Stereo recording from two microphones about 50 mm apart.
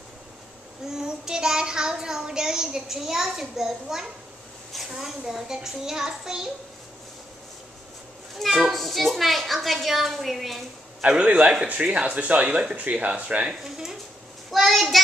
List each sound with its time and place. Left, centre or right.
0.8 s a child's voice: centre
8.4 s a woman's voice: centre
11.0 s speech: right
13.5 s a child's voice: centre